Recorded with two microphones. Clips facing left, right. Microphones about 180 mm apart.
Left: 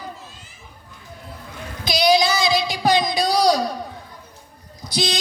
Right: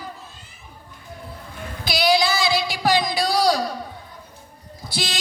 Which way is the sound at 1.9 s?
20° left (ahead or behind).